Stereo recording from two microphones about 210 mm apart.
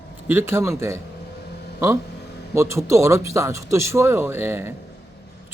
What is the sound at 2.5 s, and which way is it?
A man's voice, 15° right (ahead or behind).